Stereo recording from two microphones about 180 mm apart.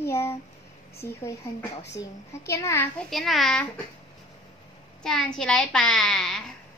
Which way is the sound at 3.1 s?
Centre (ahead or behind).